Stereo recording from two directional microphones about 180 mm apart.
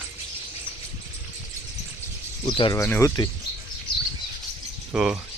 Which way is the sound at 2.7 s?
15° left (ahead or behind).